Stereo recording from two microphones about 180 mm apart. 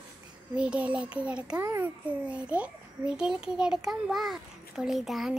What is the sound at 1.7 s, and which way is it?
A child's voice, 10° right (ahead or behind).